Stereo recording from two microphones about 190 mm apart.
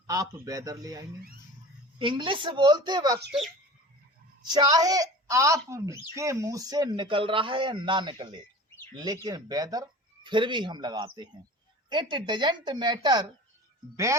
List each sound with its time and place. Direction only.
0.1 s a woman's voice: 20° right (ahead or behind)
4.4 s a woman's voice: 20° right (ahead or behind)